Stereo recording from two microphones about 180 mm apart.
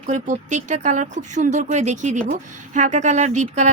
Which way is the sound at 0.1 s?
45° right (ahead or behind).